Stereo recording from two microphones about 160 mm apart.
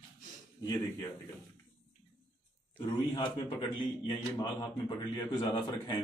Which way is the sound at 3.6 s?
30° left (ahead or behind).